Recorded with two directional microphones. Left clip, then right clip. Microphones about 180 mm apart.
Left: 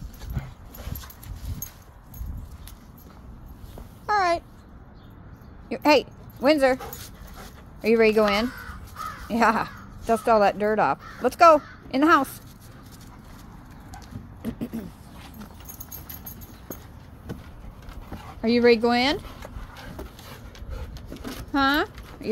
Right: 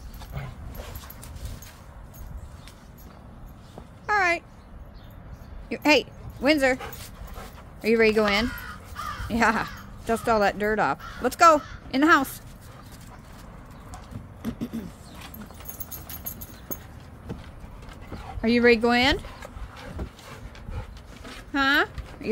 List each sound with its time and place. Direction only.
4.0 s a sound: centre (ahead or behind)
5.7 s speech: centre (ahead or behind)
7.8 s speech: centre (ahead or behind)
14.4 s a sound: 10° right (ahead or behind)
18.4 s speech: 5° right (ahead or behind)
21.5 s clip-clop: centre (ahead or behind)